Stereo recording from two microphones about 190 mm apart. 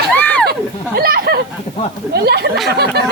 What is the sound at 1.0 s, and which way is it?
Speech, 55° right (ahead or behind).